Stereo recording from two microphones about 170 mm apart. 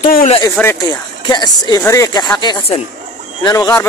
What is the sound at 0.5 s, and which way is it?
Speech, 15° left (ahead or behind).